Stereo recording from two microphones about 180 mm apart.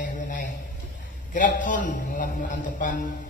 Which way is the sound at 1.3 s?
45° left (ahead or behind).